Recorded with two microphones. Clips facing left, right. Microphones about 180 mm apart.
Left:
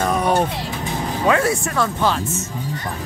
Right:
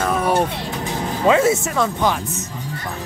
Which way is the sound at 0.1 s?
Centre (ahead or behind).